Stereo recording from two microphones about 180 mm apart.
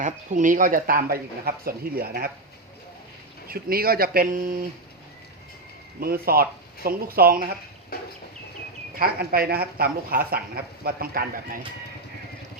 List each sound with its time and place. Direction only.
0.0 s speech: 45° right (ahead or behind)
3.5 s speech: 55° right (ahead or behind)
6.0 s speech: 55° right (ahead or behind)
9.0 s speech: 55° right (ahead or behind)